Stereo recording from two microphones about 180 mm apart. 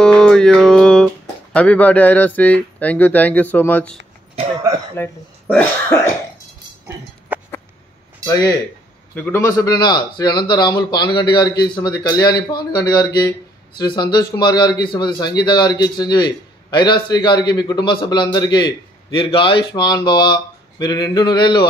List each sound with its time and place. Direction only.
0.0 s speech: 5° left (ahead or behind)
7.3 s a sound: 10° right (ahead or behind)
8.3 s a man's voice: 20° left (ahead or behind)
9.1 s a man's voice: 10° left (ahead or behind)
9.4 s a man's voice: 20° left (ahead or behind)